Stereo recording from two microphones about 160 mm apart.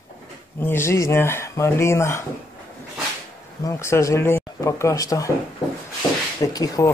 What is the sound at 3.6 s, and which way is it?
Speech, 20° left (ahead or behind).